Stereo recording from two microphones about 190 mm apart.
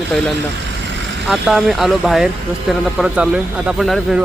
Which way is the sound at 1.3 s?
Centre (ahead or behind).